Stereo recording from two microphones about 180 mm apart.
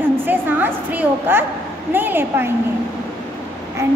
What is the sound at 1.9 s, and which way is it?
Speech, 10° right (ahead or behind).